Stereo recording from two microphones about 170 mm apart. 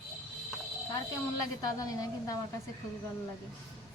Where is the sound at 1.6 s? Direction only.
20° left (ahead or behind).